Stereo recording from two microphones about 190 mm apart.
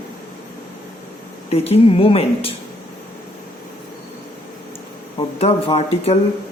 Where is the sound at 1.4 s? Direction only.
30° left (ahead or behind).